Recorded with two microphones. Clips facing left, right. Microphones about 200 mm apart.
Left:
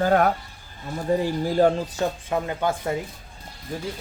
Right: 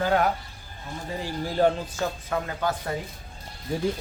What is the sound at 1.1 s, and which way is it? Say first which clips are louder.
Speech: left 12 dB; 55° left (ahead or behind).